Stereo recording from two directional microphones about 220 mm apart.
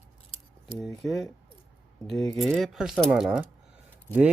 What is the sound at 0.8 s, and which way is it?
Speech, centre (ahead or behind).